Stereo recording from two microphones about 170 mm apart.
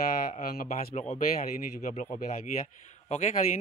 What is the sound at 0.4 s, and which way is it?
Speech, 60° left (ahead or behind).